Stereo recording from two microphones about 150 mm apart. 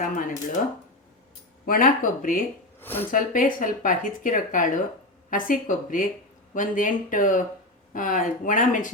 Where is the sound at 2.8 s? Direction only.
15° left (ahead or behind).